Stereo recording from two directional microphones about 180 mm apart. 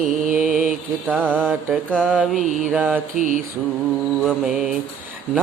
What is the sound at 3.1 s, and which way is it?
Mantra, 45° right (ahead or behind).